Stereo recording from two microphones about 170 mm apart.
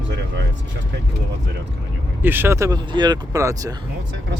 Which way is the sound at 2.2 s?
10° right (ahead or behind).